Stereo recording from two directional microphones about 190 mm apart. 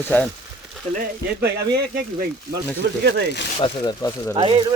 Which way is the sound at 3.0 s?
65° right (ahead or behind).